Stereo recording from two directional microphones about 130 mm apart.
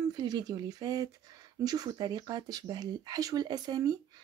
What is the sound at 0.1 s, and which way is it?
A woman's voice, 35° right (ahead or behind).